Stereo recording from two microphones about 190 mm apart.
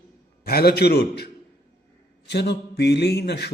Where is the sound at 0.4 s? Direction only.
55° left (ahead or behind).